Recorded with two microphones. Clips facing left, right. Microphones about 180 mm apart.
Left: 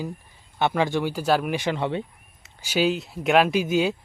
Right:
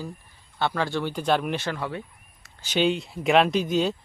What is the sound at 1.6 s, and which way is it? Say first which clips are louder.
Speech: left 5 dB; 20° left (ahead or behind).